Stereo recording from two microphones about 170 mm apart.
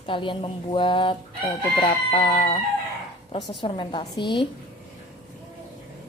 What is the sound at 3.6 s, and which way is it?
Speech, 25° left (ahead or behind).